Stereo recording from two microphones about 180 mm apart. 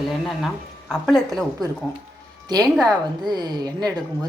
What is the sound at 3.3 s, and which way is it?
Speech, 25° right (ahead or behind).